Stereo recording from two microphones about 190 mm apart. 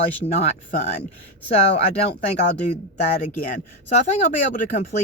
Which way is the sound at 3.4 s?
40° left (ahead or behind).